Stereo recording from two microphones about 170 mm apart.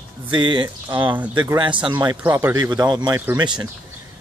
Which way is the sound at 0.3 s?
30° right (ahead or behind).